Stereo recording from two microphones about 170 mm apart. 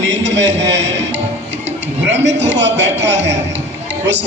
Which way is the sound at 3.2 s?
90° right.